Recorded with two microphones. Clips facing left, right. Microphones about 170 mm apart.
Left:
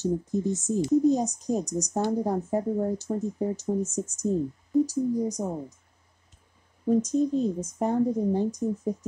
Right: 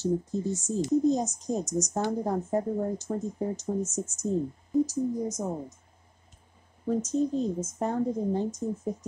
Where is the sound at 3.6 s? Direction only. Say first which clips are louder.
Left 2 dB; 15° left (ahead or behind).